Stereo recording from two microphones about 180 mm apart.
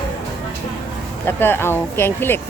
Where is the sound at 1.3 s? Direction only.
10° left (ahead or behind).